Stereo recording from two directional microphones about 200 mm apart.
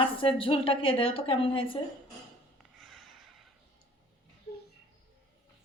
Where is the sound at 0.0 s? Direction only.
25° left (ahead or behind).